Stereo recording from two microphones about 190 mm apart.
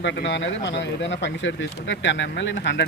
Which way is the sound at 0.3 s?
70° left (ahead or behind).